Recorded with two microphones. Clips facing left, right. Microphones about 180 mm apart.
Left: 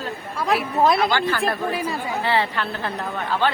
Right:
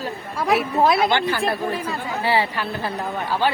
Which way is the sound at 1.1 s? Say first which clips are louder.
Right 1 dB; 20° right (ahead or behind).